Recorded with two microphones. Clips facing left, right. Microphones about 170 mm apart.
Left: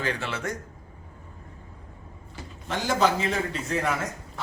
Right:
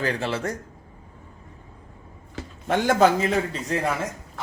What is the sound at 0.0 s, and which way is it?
Speech, 35° right (ahead or behind).